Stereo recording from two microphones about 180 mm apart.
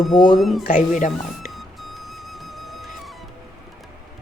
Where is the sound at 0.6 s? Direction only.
50° left (ahead or behind).